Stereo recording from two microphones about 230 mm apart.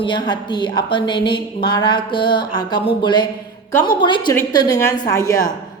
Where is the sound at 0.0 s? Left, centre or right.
Centre.